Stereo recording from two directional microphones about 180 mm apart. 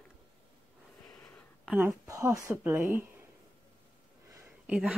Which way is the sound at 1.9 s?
15° right (ahead or behind).